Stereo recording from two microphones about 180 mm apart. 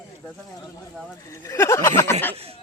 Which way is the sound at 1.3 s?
15° left (ahead or behind).